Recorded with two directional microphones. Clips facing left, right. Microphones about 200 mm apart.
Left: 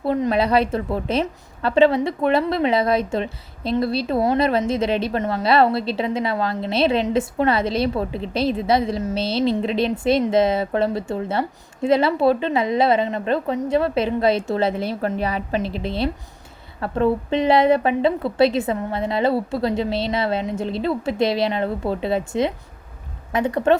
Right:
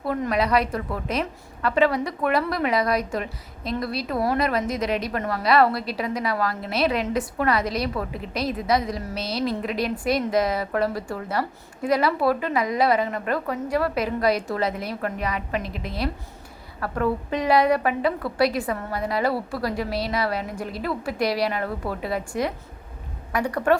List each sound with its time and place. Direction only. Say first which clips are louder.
0.0 s a woman's voice: left 4 dB; 25° left (ahead or behind)